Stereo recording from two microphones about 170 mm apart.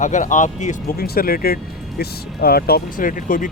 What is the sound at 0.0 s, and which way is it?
Speech, 45° left (ahead or behind).